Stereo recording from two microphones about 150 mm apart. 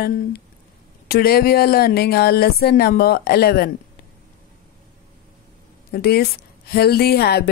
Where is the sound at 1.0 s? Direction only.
90° left.